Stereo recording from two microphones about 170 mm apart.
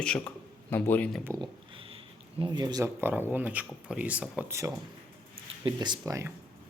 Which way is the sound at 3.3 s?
10° right (ahead or behind).